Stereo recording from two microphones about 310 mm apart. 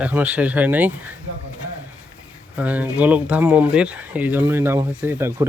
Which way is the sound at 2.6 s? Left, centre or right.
Centre.